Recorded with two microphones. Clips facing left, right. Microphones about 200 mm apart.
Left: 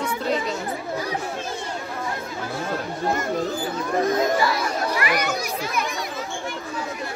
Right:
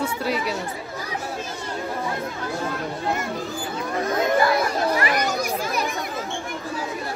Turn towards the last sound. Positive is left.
turn(degrees=-40)  # may be behind; listen again after turning